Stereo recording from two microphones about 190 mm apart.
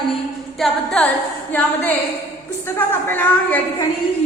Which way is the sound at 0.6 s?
5° left (ahead or behind).